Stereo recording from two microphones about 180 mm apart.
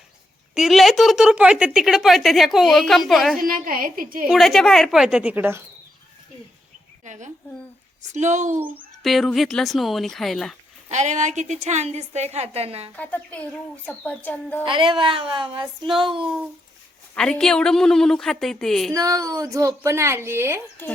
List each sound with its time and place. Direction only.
0.5 s a woman's voice: centre (ahead or behind)
3.3 s a woman's voice: 50° right (ahead or behind)
4.3 s a woman's voice: centre (ahead or behind)
7.0 s a sound: 45° right (ahead or behind)
8.1 s a woman's voice: 40° right (ahead or behind)
8.5 s a woman's voice: 10° right (ahead or behind)
10.8 s a woman's voice: 40° right (ahead or behind)
13.0 s speech: 10° left (ahead or behind)
14.6 s speech: 25° right (ahead or behind)
17.2 s a woman's voice: 5° left (ahead or behind)
18.9 s a woman's voice: 20° right (ahead or behind)